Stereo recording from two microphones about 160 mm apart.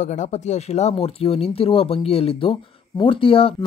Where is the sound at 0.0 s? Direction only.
50° left (ahead or behind).